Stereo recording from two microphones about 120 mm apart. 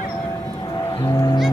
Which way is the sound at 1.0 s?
30° left (ahead or behind).